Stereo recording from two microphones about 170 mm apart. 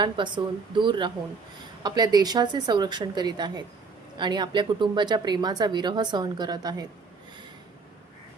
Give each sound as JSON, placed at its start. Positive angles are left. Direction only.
{"t": 0.0, "sound": "a woman's voice", "side_deg": -25}